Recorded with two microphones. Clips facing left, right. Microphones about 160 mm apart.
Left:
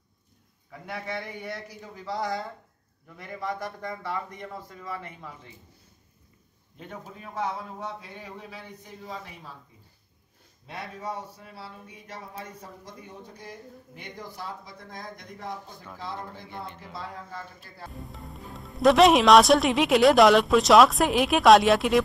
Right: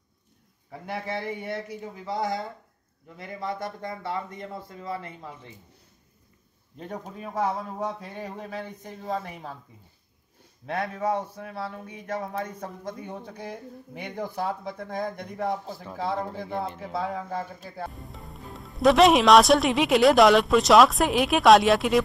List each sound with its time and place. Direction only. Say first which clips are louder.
0.7 s speech: right 3 dB; 30° right (ahead or behind)
6.8 s a man's voice: right 5 dB; 40° right (ahead or behind); by 9.5 s 55° right (ahead or behind)
10.7 s speech: right 9 dB; 65° right (ahead or behind)
15.7 s speech: right 6 dB; 30° right (ahead or behind)
16.3 s speech: right 8 dB; 45° right (ahead or behind); by 17.8 s 60° right (ahead or behind)
17.9 s speech: left 1 dB; centre (ahead or behind)